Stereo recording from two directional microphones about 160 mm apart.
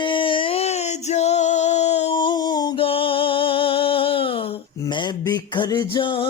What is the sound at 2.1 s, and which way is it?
Music, 30° left (ahead or behind).